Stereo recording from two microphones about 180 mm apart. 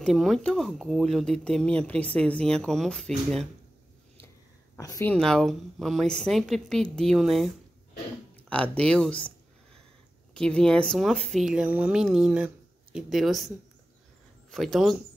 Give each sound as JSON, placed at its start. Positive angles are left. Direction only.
{"t": 0.0, "sound": "speech", "side_deg": 0}
{"t": 4.7, "sound": "speech", "side_deg": 20}
{"t": 5.1, "sound": "speech", "side_deg": 5}
{"t": 10.3, "sound": "speech", "side_deg": 5}
{"t": 14.5, "sound": "speech", "side_deg": 0}